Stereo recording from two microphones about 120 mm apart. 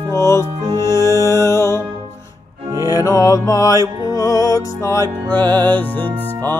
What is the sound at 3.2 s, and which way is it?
Music, 30° left (ahead or behind).